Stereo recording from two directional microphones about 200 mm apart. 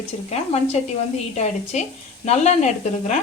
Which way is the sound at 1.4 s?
35° left (ahead or behind).